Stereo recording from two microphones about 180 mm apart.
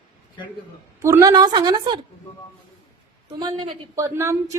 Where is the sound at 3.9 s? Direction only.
15° right (ahead or behind).